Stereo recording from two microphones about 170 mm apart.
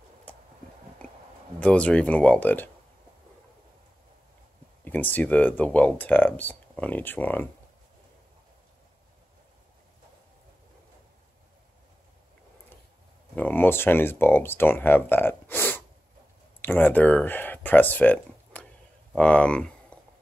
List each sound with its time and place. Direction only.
0.3 s a sound: 10° left (ahead or behind)
1.6 s speech: 5° left (ahead or behind)
4.8 s speech: 10° left (ahead or behind)
13.4 s speech: 10° left (ahead or behind)